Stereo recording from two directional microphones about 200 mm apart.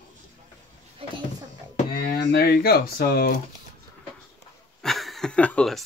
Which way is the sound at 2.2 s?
50° left (ahead or behind).